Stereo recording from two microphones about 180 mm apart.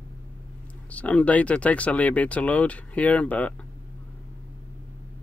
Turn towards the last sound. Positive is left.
turn(degrees=5)  # may be behind; listen again after turning